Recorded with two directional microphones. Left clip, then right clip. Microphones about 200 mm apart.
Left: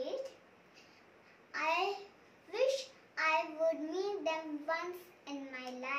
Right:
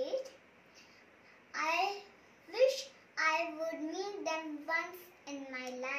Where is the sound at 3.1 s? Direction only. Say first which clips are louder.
Even; 5° left (ahead or behind).